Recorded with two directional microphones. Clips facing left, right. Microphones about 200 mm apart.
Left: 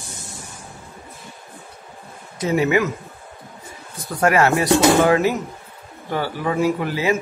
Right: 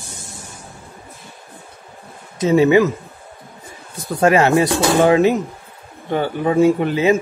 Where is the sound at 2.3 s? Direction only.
25° right (ahead or behind).